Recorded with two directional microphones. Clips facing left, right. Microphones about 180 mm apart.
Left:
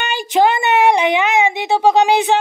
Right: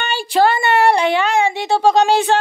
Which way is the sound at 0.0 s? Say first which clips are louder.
Left 1 dB; 15° left (ahead or behind).